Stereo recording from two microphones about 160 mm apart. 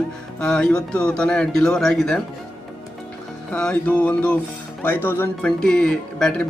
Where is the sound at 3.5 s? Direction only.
5° left (ahead or behind).